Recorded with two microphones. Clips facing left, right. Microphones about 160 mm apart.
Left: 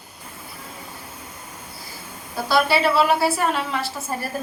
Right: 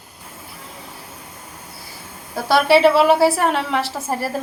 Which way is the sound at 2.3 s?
80° right.